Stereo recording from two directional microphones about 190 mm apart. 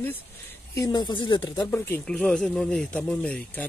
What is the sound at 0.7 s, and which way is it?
Speech, 20° left (ahead or behind).